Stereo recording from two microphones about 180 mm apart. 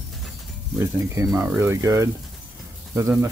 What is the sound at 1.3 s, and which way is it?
Speech, 15° right (ahead or behind).